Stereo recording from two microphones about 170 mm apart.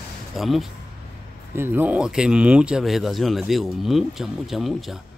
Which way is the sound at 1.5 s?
15° right (ahead or behind).